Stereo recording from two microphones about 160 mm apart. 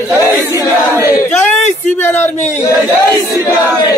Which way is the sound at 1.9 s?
15° left (ahead or behind).